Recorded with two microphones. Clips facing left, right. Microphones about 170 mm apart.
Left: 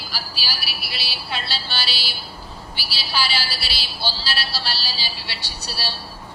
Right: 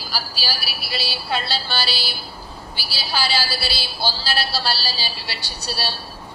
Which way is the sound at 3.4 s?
40° right (ahead or behind).